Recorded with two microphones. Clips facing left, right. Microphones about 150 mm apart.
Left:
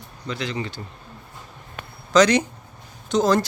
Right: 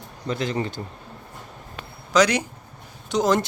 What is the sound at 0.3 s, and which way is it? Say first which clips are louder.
Speech: right 3 dB; 45° right (ahead or behind).